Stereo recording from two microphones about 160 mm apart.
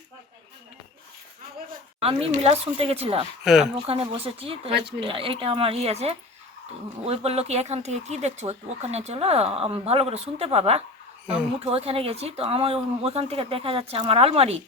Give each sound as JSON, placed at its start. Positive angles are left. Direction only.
{"t": 2.0, "sound": "speech", "side_deg": -35}
{"t": 3.4, "sound": "speech", "side_deg": 0}
{"t": 3.8, "sound": "speech", "side_deg": -35}